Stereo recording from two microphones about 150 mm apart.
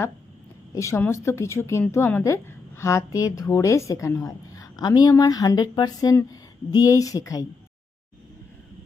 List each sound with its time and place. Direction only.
0.7 s a woman's voice: 20° left (ahead or behind)